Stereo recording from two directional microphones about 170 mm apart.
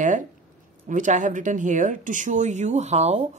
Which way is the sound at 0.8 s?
50° right (ahead or behind).